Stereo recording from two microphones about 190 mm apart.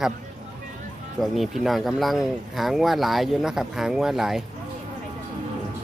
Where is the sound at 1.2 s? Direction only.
Centre (ahead or behind).